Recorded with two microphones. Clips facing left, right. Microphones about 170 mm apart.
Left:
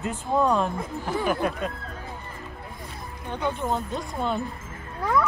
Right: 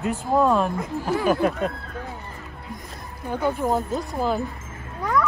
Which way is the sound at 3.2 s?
5° right (ahead or behind).